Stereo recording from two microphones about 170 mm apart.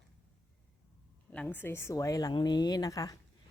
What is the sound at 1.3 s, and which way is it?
A woman's voice, 10° left (ahead or behind).